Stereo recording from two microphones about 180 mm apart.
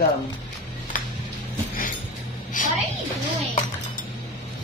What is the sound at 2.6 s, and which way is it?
Music, 45° left (ahead or behind).